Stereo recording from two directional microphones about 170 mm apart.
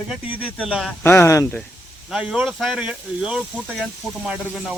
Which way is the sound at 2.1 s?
5° right (ahead or behind).